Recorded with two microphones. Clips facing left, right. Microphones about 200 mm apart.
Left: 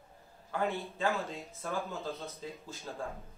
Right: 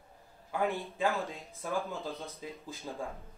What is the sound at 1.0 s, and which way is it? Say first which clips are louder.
Speech: right 1 dB; 15° right (ahead or behind).